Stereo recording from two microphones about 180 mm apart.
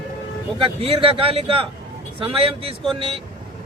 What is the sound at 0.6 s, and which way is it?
A man's voice, 30° right (ahead or behind).